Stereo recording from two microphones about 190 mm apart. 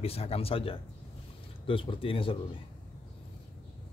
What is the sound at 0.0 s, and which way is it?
Speech, 30° left (ahead or behind).